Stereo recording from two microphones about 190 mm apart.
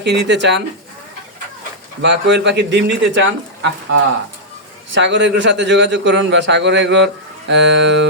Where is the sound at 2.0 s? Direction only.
70° right (ahead or behind).